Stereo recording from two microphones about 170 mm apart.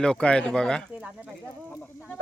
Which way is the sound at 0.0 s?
5° left (ahead or behind).